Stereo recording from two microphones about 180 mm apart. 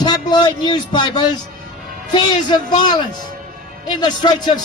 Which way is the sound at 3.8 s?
25° left (ahead or behind).